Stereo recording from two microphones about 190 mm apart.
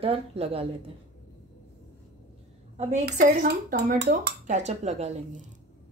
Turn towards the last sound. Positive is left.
turn(degrees=-35)  # may be behind; listen again after turning